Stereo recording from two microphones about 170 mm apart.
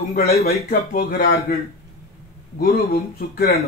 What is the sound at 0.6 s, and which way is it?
Speech, 60° left (ahead or behind).